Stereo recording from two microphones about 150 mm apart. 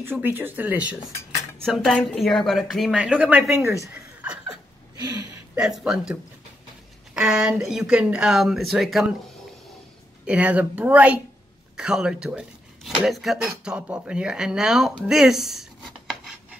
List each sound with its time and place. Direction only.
0.0 s a woman's voice: 15° right (ahead or behind)
4.9 s speech: 25° right (ahead or behind)
5.6 s a woman's voice: 5° right (ahead or behind)
7.2 s a woman's voice: 5° right (ahead or behind)
10.2 s speech: 10° right (ahead or behind)